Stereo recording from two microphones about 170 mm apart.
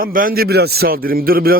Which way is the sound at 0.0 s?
55° right (ahead or behind).